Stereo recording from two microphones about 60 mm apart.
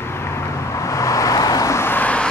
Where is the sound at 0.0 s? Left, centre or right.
Left.